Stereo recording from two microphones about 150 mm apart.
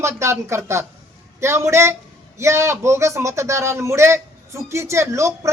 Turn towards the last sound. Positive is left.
turn(degrees=-20)  # may be behind; listen again after turning